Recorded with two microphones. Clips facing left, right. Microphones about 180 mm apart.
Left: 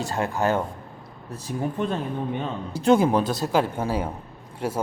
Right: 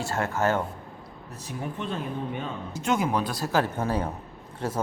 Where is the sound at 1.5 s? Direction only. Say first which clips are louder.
Left 6 dB; 40° left (ahead or behind).